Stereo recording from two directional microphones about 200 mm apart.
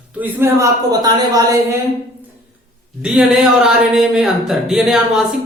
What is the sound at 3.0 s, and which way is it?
Speech, 5° right (ahead or behind).